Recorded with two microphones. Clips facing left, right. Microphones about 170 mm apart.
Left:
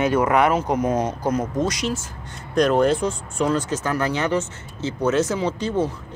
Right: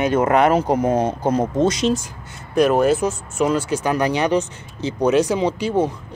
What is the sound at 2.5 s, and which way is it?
Speech, 5° right (ahead or behind).